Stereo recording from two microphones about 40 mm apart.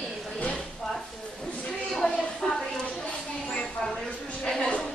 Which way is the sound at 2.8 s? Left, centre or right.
Left.